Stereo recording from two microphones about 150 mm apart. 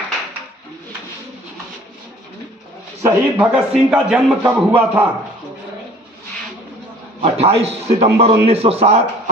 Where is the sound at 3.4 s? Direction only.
5° right (ahead or behind).